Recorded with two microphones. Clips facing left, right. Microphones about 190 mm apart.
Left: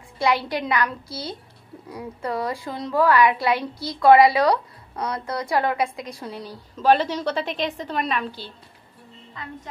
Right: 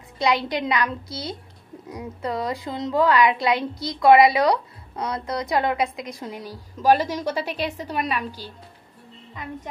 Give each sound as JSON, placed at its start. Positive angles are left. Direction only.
{"t": 0.2, "sound": "a woman's voice", "side_deg": -20}